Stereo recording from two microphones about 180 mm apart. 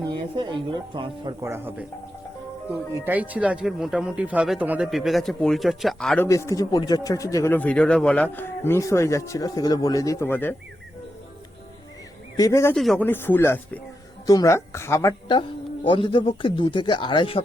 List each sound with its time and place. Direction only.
0.0 s speech: 25° right (ahead or behind)
1.5 s speech: 10° right (ahead or behind); by 6.2 s 5° left (ahead or behind)
6.2 s speech: 15° left (ahead or behind)
12.4 s speech: 15° left (ahead or behind)
12.7 s speech: centre (ahead or behind); by 17.4 s 30° left (ahead or behind)